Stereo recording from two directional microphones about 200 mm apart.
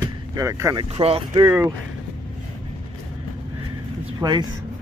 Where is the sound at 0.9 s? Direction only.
30° right (ahead or behind).